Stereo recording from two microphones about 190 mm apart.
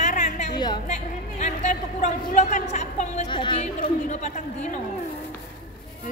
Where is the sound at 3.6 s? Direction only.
40° left (ahead or behind).